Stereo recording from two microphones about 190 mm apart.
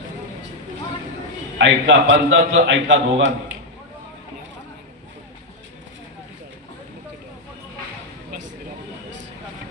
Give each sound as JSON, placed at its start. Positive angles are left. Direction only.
{"t": 1.6, "sound": "a man's voice", "side_deg": -85}